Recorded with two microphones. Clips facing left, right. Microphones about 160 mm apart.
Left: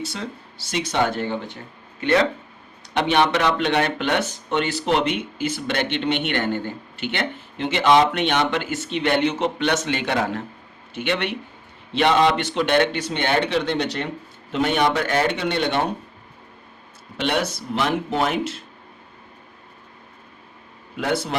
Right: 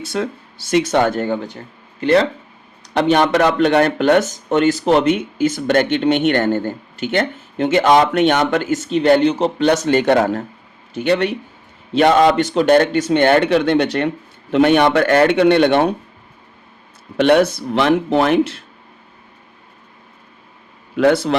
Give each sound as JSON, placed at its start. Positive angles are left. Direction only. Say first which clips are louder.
{"t": 0.0, "sound": "speech", "louder": "right 8 dB", "side_deg": -50}
{"t": 2.0, "sound": "speech", "louder": "right 5 dB", "side_deg": -35}
{"t": 17.2, "sound": "speech", "louder": "right 11 dB", "side_deg": -55}
{"t": 21.0, "sound": "a man's voice", "louder": "right 10 dB", "side_deg": -85}